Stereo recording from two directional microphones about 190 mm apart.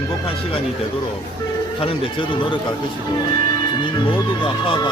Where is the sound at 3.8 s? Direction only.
25° left (ahead or behind).